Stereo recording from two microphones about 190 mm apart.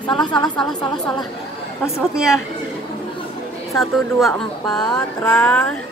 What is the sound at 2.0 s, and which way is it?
Speech, centre (ahead or behind).